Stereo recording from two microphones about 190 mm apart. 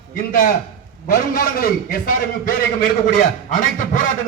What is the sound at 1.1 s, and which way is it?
A man's voice, 50° left (ahead or behind).